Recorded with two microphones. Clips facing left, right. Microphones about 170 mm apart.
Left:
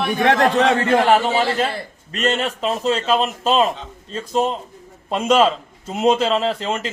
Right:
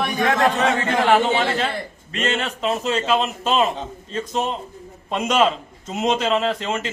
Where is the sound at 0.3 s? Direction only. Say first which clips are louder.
Left 4 dB; 65° left (ahead or behind).